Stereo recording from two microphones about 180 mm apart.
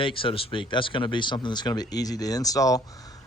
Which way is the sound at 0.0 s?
30° left (ahead or behind).